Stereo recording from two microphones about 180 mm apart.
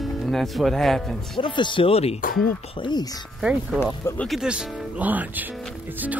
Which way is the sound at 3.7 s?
5° left (ahead or behind).